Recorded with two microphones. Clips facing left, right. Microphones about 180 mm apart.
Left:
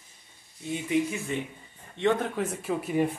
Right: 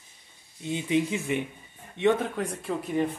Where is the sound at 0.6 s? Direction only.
20° right (ahead or behind).